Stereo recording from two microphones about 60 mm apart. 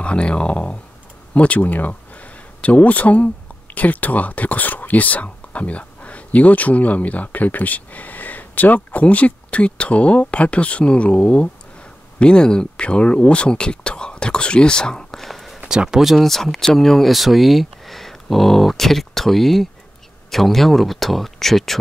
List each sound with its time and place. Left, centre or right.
0.0 s speech: centre
15.6 s speech: centre